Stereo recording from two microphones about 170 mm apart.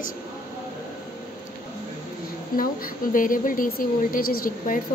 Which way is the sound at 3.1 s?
50° left (ahead or behind).